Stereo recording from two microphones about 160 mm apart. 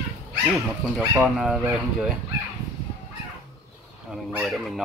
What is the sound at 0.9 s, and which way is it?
Speech, 5° right (ahead or behind).